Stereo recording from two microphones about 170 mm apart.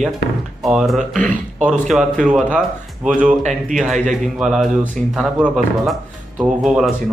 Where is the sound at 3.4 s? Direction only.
45° right (ahead or behind).